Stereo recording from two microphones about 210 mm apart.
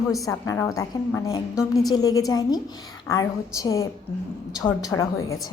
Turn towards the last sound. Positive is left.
turn(degrees=15)  # may be behind; listen again after turning